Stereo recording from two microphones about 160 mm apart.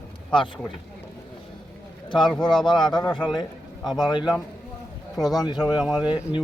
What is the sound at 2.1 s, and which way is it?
Speech, 30° left (ahead or behind).